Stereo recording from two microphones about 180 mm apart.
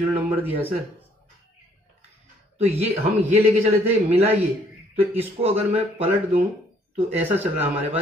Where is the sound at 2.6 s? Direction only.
35° right (ahead or behind).